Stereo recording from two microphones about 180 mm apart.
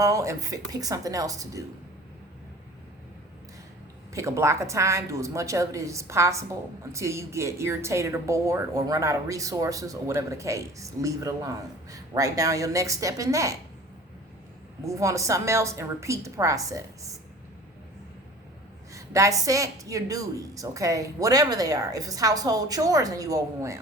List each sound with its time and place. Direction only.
0.0 s a woman's voice: 15° right (ahead or behind)
4.1 s speech: 15° right (ahead or behind)
14.8 s speech: 15° right (ahead or behind)
18.9 s a woman's voice: 15° right (ahead or behind)